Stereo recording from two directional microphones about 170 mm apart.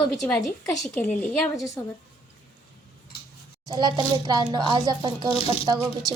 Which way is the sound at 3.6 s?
25° right (ahead or behind).